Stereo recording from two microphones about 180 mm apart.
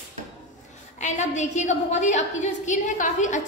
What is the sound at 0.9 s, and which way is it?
A woman's voice, 40° left (ahead or behind).